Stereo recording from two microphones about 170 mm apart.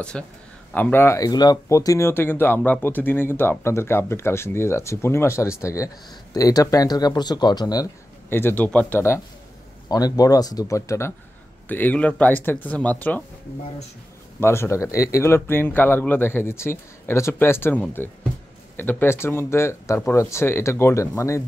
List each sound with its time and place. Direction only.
0.1 s a man's voice: 5° left (ahead or behind)
14.4 s speech: 15° left (ahead or behind)